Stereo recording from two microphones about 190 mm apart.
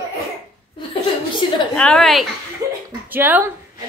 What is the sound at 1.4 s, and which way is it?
Speech, 25° left (ahead or behind).